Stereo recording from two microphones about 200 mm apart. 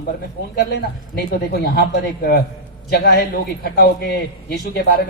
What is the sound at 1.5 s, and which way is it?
A man's voice, 50° left (ahead or behind).